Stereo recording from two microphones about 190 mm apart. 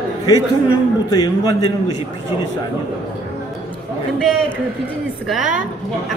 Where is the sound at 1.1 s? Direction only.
20° left (ahead or behind).